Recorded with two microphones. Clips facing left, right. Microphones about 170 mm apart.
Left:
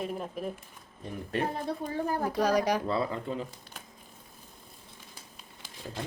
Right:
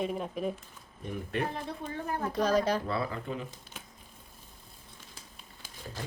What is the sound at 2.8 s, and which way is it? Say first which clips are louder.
Speech: left 3 dB; 25° left (ahead or behind).